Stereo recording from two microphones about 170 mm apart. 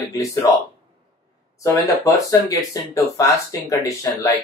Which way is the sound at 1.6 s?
20° left (ahead or behind).